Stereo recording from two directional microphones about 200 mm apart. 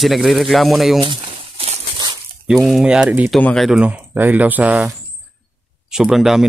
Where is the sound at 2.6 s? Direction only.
5° right (ahead or behind).